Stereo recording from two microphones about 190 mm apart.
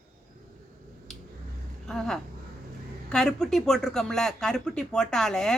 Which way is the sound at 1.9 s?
Centre (ahead or behind).